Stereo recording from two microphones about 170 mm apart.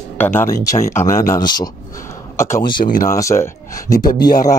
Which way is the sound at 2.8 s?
55° left (ahead or behind).